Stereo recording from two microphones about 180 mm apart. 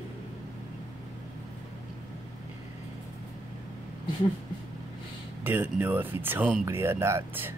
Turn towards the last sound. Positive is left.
turn(degrees=-15)  # may be behind; listen again after turning